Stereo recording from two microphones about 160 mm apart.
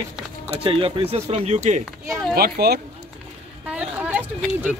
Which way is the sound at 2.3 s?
75° right (ahead or behind).